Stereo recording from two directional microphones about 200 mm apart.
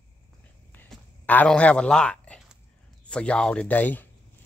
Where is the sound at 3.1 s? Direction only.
5° left (ahead or behind).